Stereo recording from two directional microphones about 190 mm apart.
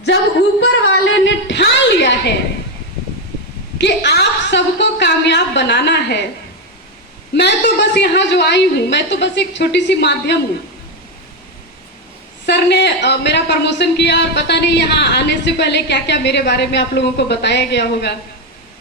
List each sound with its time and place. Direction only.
0.6 s a sound: 70° left (ahead or behind)
3.8 s a woman's voice: 65° left (ahead or behind)
7.3 s speech: 65° left (ahead or behind)
12.5 s speech: 60° left (ahead or behind)